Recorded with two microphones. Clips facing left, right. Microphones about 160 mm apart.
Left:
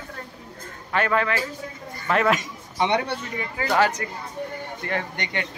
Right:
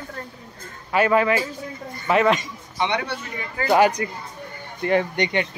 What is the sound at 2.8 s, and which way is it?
Speech, 45° left (ahead or behind).